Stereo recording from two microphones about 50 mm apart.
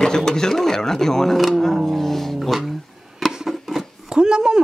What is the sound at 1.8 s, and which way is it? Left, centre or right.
Music, centre.